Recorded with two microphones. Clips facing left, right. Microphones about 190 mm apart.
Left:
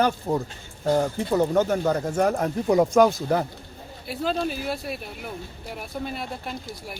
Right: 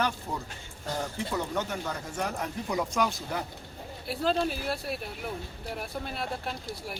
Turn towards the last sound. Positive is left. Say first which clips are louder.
# left 2 dB
turn(degrees=0)  # may be behind; listen again after turning